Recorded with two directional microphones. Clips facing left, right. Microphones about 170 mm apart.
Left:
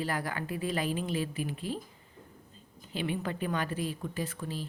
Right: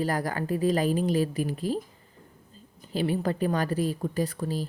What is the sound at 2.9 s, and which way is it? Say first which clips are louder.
A woman's voice: right 7 dB; 40° right (ahead or behind).